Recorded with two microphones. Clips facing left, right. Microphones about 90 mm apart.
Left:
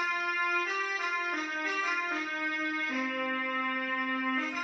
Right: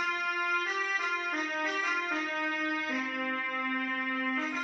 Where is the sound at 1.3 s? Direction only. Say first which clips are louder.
Right 1 dB; 20° right (ahead or behind).